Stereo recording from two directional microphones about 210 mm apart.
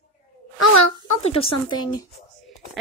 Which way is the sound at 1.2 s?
25° left (ahead or behind).